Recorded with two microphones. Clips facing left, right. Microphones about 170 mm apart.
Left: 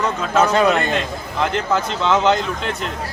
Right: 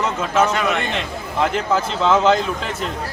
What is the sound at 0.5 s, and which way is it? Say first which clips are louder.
Speech: left 5 dB; 35° left (ahead or behind).